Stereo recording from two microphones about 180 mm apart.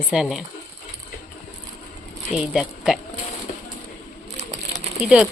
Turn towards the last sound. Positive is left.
turn(degrees=-5)  # may be behind; listen again after turning